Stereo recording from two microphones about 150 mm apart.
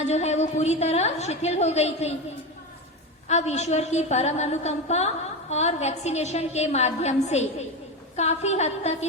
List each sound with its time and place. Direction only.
0.0 s a woman's voice: 50° left (ahead or behind)
3.2 s a woman's voice: 50° left (ahead or behind)